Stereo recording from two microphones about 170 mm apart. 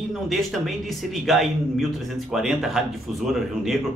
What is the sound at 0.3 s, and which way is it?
Speech, centre (ahead or behind).